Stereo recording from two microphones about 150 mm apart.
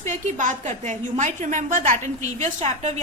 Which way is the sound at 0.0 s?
55° right (ahead or behind).